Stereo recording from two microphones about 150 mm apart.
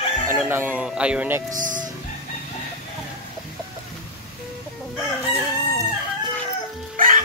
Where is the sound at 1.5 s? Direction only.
60° right (ahead or behind).